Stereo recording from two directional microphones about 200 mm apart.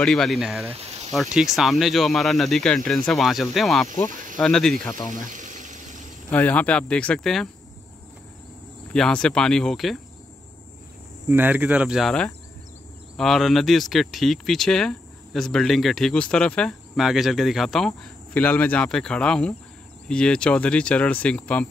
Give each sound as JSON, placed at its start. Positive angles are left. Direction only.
{"t": 0.0, "sound": "speech", "side_deg": 5}
{"t": 0.7, "sound": "a sound", "side_deg": -30}
{"t": 1.1, "sound": "speech", "side_deg": 0}
{"t": 5.1, "sound": "a sound", "side_deg": -40}
{"t": 6.3, "sound": "speech", "side_deg": 10}
{"t": 8.9, "sound": "speech", "side_deg": 5}
{"t": 11.2, "sound": "speech", "side_deg": -10}